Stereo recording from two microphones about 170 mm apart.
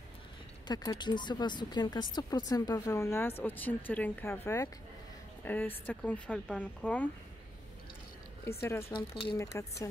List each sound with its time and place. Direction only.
0.7 s a woman's voice: 25° left (ahead or behind); by 7.1 s 10° left (ahead or behind)
8.5 s speech: 15° left (ahead or behind)
8.9 s speech: 30° left (ahead or behind)
9.4 s speech: 20° left (ahead or behind)